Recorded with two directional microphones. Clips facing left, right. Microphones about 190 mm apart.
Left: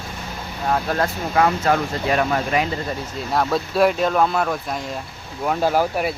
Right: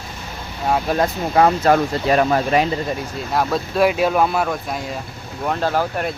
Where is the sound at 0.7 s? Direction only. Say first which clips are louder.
Right 3 dB; 15° right (ahead or behind).